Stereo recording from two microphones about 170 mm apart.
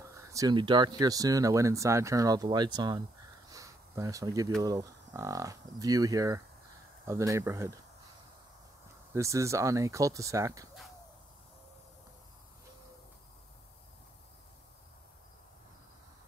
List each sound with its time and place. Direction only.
0.0 s speech: 20° right (ahead or behind)
3.4 s a sound: 20° right (ahead or behind)
4.6 s speech: 20° right (ahead or behind)
9.1 s speech: 15° right (ahead or behind)